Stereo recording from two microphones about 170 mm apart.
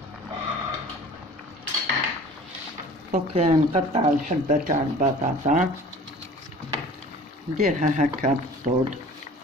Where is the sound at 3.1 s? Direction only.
40° right (ahead or behind).